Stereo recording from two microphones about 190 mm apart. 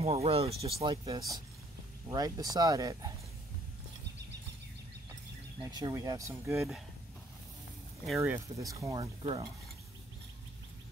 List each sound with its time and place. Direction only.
0.0 s speech: 30° right (ahead or behind)
1.0 s speech: 20° right (ahead or behind)
5.6 s speech: 20° right (ahead or behind)
8.2 s speech: 15° right (ahead or behind)
9.0 s speech: 30° right (ahead or behind)